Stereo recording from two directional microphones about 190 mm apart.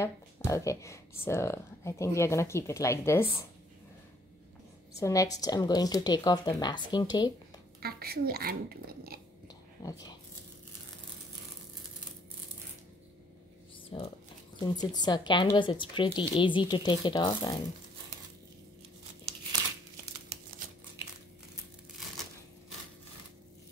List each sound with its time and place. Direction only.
0.5 s speech: 15° left (ahead or behind)
5.0 s speech: 15° left (ahead or behind)
7.8 s speech: 55° right (ahead or behind)
9.8 s speech: 20° left (ahead or behind)
13.9 s speech: 25° left (ahead or behind)
20.6 s crumpling: 45° right (ahead or behind)